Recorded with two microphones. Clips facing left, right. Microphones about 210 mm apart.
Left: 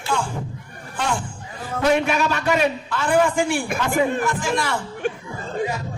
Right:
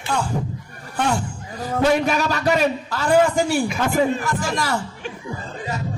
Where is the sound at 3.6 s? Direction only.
55° left (ahead or behind).